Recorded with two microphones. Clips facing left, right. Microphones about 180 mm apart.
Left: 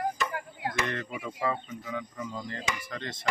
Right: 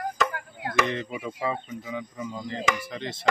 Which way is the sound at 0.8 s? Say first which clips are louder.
Right 4 dB; 20° right (ahead or behind).